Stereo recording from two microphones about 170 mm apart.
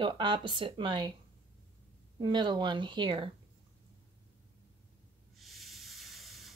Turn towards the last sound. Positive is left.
turn(degrees=0)  # may be behind; listen again after turning